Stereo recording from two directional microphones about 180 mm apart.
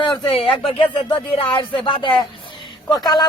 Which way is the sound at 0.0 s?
30° left (ahead or behind).